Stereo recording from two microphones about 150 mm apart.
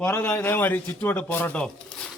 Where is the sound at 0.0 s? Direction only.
15° left (ahead or behind).